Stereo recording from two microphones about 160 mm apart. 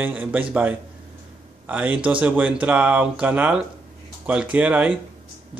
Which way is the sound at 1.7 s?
10° right (ahead or behind).